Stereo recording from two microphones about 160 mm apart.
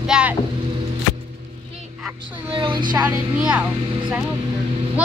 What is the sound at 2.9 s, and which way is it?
Speech, 15° right (ahead or behind).